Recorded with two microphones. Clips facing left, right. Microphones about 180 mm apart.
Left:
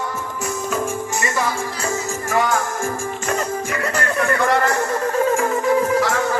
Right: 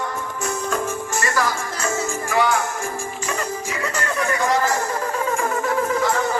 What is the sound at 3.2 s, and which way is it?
Music, 55° left (ahead or behind).